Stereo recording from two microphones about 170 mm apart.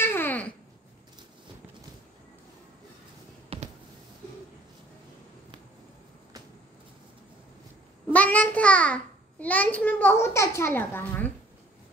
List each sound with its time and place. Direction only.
0.0 s babbling: 10° left (ahead or behind)
3.5 s a sound: 35° right (ahead or behind)
8.1 s a child's voice: 10° left (ahead or behind)